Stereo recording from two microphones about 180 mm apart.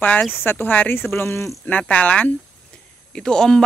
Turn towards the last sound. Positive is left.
turn(degrees=5)  # may be behind; listen again after turning